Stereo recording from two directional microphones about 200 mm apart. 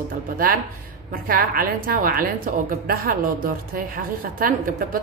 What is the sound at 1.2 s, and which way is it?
A woman's voice, 45° right (ahead or behind).